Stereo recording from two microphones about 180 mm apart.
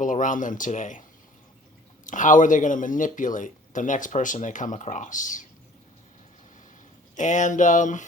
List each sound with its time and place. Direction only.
0.0 s speech: 45° left (ahead or behind)
2.0 s speech: 45° left (ahead or behind)
7.2 s speech: 45° left (ahead or behind)